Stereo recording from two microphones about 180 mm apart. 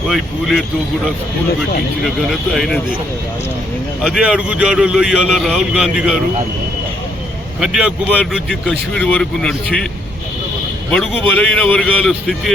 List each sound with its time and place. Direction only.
0.1 s speech: centre (ahead or behind)
2.0 s speech: centre (ahead or behind)
4.0 s speech: 5° right (ahead or behind)
7.6 s speech: 5° right (ahead or behind)
11.3 s speech: 5° left (ahead or behind)